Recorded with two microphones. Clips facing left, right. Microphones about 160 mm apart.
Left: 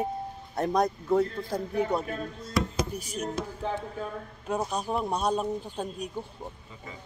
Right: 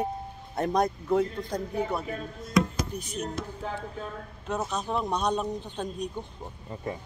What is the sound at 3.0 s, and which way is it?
Speech, 10° left (ahead or behind).